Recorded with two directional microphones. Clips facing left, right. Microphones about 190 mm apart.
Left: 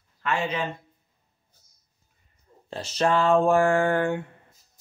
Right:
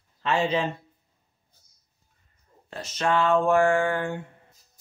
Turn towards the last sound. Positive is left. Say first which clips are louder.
# left 1 dB
turn(degrees=40)  # may be behind; listen again after turning